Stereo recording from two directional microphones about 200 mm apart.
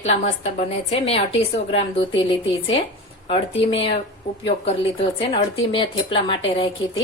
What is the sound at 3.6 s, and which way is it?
A woman's voice, 30° left (ahead or behind).